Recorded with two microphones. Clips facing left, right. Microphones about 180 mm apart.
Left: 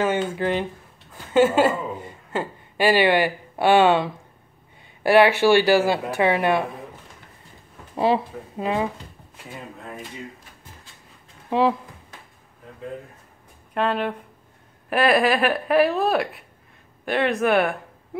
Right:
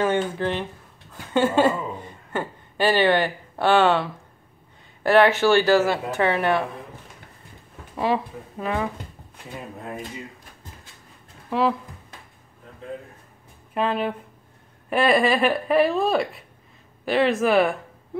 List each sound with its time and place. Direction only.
0.0 s speech: 5° left (ahead or behind)
7.9 s speech: 30° left (ahead or behind)
13.7 s speech: 5° right (ahead or behind)